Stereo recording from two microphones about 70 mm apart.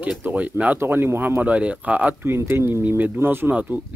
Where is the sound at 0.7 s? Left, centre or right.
Right.